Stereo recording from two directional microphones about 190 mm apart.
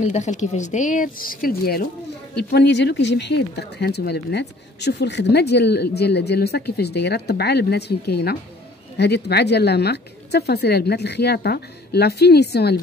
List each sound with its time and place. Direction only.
0.0 s speech: 40° left (ahead or behind)
2.3 s speech: 60° left (ahead or behind)